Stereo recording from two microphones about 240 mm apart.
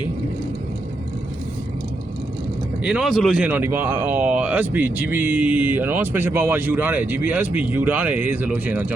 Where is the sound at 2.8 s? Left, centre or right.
Centre.